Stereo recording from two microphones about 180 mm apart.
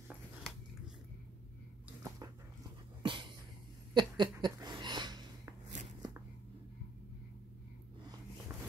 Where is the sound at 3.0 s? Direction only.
25° right (ahead or behind).